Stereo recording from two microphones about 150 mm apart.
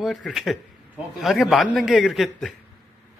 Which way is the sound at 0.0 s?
Centre (ahead or behind).